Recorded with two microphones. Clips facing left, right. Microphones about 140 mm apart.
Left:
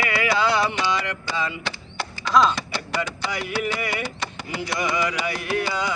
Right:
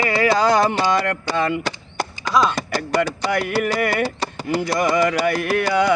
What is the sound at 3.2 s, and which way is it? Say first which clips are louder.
Music: right 6 dB; 55° right (ahead or behind).